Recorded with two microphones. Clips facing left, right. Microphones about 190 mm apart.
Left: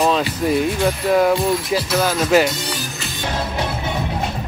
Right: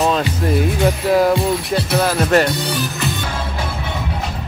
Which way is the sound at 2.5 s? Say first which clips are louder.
Right 5 dB; 60° right (ahead or behind).